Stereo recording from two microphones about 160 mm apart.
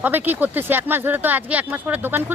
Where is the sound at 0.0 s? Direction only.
10° right (ahead or behind).